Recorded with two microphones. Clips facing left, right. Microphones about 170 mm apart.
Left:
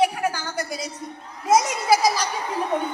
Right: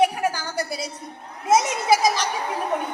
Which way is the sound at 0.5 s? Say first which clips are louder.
Right 1 dB; 30° right (ahead or behind).